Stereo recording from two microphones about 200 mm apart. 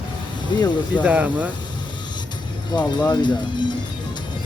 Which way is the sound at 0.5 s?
20° left (ahead or behind).